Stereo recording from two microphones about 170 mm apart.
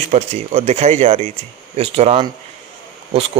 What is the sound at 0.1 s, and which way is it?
Speech, 40° right (ahead or behind).